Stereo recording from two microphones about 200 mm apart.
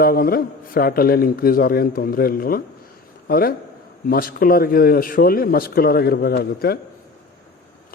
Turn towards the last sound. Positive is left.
turn(degrees=50)  # may be behind; listen again after turning